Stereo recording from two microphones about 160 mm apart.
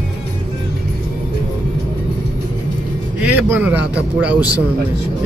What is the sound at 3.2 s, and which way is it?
Speech, 10° right (ahead or behind).